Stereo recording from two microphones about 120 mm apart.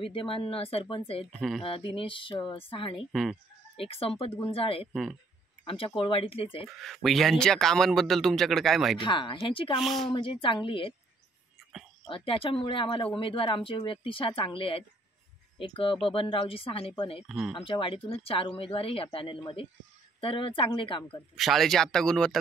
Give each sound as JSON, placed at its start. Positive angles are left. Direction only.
{"t": 0.0, "sound": "speech", "side_deg": 45}
{"t": 3.1, "sound": "a man's voice", "side_deg": 0}
{"t": 3.7, "sound": "speech", "side_deg": 50}
{"t": 6.8, "sound": "a man's voice", "side_deg": 0}
{"t": 9.0, "sound": "speech", "side_deg": 40}
{"t": 9.8, "sound": "a man's voice", "side_deg": 0}
{"t": 10.1, "sound": "speech", "side_deg": 45}
{"t": 12.1, "sound": "speech", "side_deg": 50}
{"t": 17.3, "sound": "a man's voice", "side_deg": 0}
{"t": 17.6, "sound": "speech", "side_deg": 45}
{"t": 21.4, "sound": "a man's voice", "side_deg": 0}